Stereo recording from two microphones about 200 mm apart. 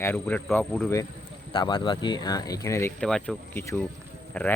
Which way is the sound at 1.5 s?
25° left (ahead or behind).